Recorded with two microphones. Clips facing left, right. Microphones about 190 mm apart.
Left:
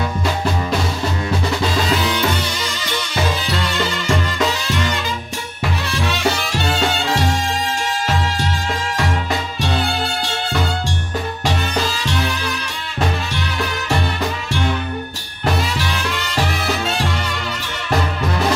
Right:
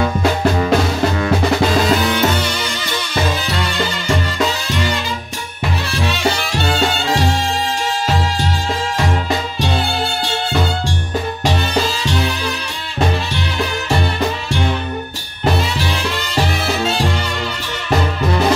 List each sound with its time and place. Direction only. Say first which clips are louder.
1.8 s music: right 4 dB; 55° right (ahead or behind)
6.6 s music: right 2 dB; 35° right (ahead or behind)
15.8 s music: right 2 dB; 30° right (ahead or behind)